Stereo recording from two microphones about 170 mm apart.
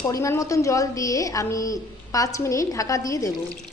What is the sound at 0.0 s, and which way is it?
Speech, 15° left (ahead or behind).